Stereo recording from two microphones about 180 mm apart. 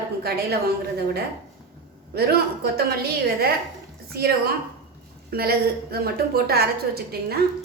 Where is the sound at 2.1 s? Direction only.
60° right (ahead or behind).